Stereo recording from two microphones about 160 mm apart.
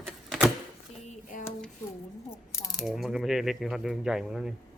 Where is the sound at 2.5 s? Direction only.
20° left (ahead or behind).